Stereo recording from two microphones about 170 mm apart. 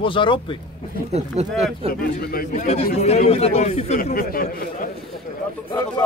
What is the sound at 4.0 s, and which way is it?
Speech, 60° left (ahead or behind).